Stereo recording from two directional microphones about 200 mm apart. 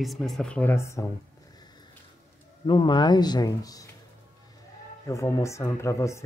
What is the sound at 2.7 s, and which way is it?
Speech, 25° left (ahead or behind).